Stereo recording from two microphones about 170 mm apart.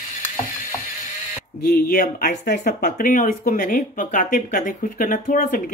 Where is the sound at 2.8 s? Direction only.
55° left (ahead or behind).